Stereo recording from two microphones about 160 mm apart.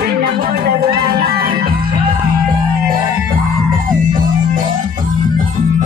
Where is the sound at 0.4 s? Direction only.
70° right (ahead or behind).